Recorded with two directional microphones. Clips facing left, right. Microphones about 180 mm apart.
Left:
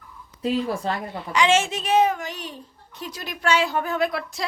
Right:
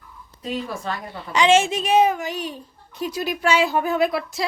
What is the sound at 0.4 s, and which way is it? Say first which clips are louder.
Speech: left 4 dB; 30° left (ahead or behind).